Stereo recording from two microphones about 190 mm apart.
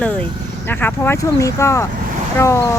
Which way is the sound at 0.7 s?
10° left (ahead or behind).